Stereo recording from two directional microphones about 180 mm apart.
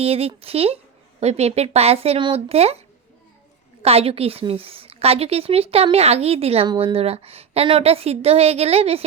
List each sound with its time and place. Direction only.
0.0 s a woman's voice: 35° right (ahead or behind)
3.8 s a woman's voice: 35° right (ahead or behind)